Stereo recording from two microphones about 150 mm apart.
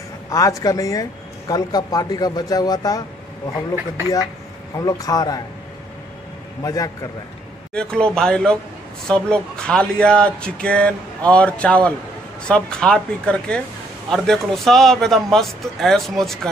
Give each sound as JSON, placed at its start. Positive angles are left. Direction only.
{"t": 0.3, "sound": "a man's voice", "side_deg": 20}
{"t": 4.7, "sound": "a man's voice", "side_deg": 25}
{"t": 6.6, "sound": "a man's voice", "side_deg": 25}
{"t": 7.7, "sound": "speech", "side_deg": 5}